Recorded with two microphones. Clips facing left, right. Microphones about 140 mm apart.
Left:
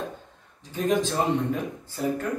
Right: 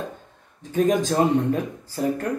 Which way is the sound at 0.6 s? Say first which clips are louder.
Right 4 dB; 50° right (ahead or behind).